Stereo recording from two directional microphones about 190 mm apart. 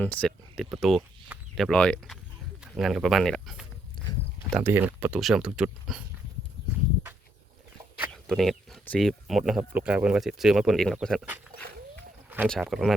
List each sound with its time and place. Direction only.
0.0 s speech: 5° left (ahead or behind)
4.0 s walk: 25° left (ahead or behind)
4.5 s speech: 10° right (ahead or behind)
7.9 s a sound: centre (ahead or behind)
9.5 s speech: 5° right (ahead or behind)
12.5 s speech: centre (ahead or behind)